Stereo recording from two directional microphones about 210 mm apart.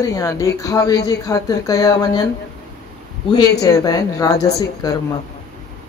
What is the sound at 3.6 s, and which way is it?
A woman's voice, 15° left (ahead or behind).